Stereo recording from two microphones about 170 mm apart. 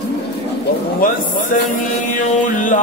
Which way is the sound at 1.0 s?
55° left (ahead or behind).